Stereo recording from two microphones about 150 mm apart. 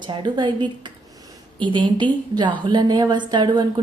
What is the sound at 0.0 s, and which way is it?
A woman's voice, 30° right (ahead or behind).